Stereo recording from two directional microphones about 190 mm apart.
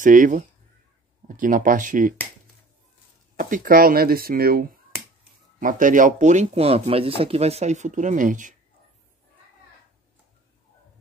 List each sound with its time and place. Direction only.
0.0 s speech: 45° right (ahead or behind)
3.3 s speech: 45° right (ahead or behind)